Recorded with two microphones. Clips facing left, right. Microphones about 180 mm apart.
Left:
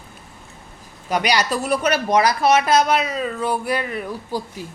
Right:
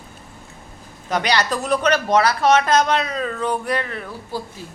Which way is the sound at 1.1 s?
10° left (ahead or behind).